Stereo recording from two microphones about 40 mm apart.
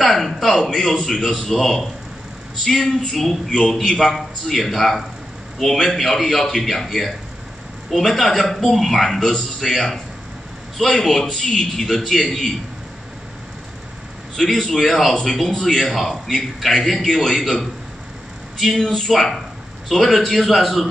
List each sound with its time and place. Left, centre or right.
0.0 s a man's voice: centre
4.0 s a man's voice: centre
14.3 s a man's voice: centre